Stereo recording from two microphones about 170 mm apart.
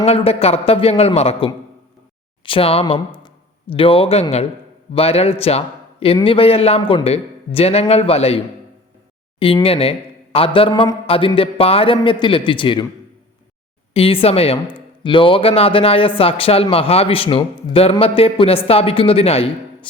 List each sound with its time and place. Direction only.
0.0 s speech: 35° left (ahead or behind)
9.6 s speech: 35° left (ahead or behind)
13.9 s speech: 35° left (ahead or behind)